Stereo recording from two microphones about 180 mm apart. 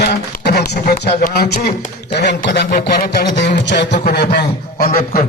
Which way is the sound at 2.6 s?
50° left (ahead or behind).